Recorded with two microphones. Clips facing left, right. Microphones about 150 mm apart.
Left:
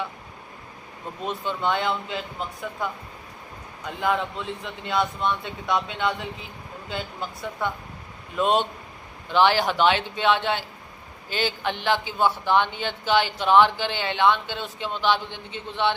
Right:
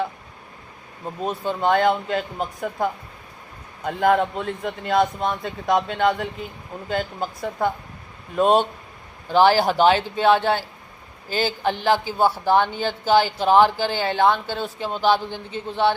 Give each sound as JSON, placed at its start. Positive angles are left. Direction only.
{"t": 1.2, "sound": "a man's voice", "side_deg": -40}